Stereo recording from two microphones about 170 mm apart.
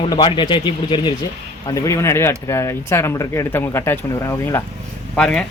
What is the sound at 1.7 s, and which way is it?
Speech, 20° left (ahead or behind).